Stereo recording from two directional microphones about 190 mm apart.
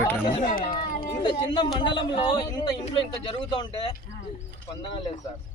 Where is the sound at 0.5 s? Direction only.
45° left (ahead or behind).